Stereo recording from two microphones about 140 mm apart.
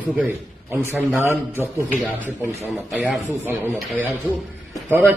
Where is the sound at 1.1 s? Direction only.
15° right (ahead or behind).